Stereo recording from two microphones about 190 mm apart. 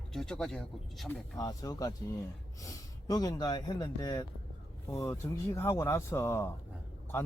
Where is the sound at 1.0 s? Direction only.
20° left (ahead or behind).